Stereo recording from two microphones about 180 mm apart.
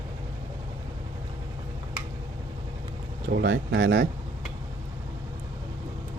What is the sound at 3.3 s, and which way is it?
Speech, 75° right (ahead or behind).